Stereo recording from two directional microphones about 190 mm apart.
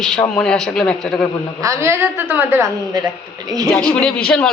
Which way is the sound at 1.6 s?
15° right (ahead or behind).